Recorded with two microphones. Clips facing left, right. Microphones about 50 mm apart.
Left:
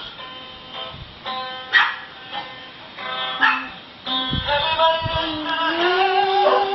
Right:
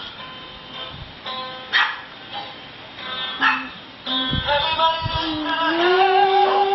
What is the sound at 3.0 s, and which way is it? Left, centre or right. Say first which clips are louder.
Music: left 3 dB; centre.